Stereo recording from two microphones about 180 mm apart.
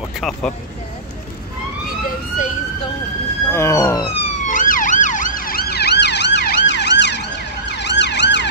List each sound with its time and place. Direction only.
0.2 s speech: 5° left (ahead or behind)
1.9 s emergency vehicle: 50° left (ahead or behind)
3.5 s police car: 15° left (ahead or behind)
4.2 s emergency vehicle: 40° left (ahead or behind); by 8.5 s 75° left (ahead or behind)